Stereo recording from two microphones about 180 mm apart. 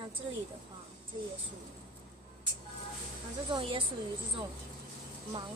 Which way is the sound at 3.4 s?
30° right (ahead or behind).